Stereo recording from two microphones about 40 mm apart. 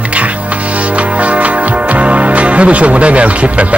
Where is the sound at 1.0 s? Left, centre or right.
Right.